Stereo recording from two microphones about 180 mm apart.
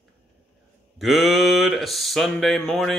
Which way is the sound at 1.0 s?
Centre (ahead or behind).